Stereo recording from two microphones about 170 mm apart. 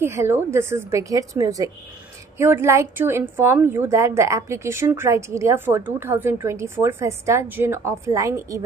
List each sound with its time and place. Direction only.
0.0 s a woman's voice: 15° right (ahead or behind)